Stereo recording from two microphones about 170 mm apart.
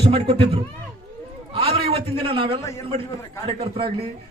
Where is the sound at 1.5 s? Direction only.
35° right (ahead or behind).